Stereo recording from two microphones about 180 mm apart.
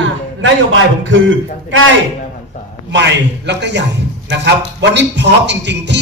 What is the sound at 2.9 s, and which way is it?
A man's voice, 75° right (ahead or behind).